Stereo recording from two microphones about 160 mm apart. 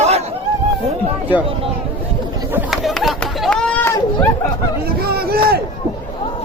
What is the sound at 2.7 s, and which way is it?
Run, centre (ahead or behind).